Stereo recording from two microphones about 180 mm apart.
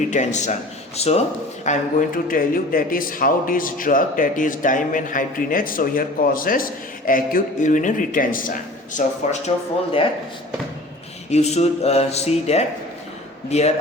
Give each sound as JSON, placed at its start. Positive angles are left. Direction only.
{"t": 0.1, "sound": "speech", "side_deg": 40}
{"t": 11.3, "sound": "speech", "side_deg": 35}